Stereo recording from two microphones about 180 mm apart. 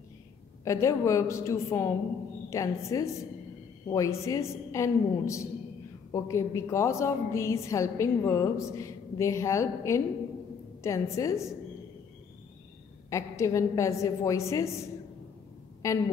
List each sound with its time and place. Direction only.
0.7 s a woman's voice: 15° left (ahead or behind)
13.1 s a woman's voice: 15° left (ahead or behind)
15.8 s a woman's voice: 20° left (ahead or behind)